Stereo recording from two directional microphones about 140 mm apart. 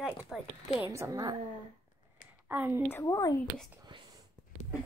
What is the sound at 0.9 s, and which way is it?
Speech, 20° right (ahead or behind).